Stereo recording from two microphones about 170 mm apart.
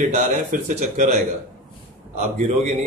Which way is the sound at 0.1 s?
45° right (ahead or behind).